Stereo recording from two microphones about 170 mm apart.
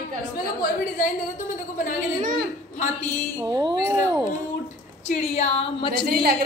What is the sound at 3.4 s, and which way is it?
Speech, 25° right (ahead or behind).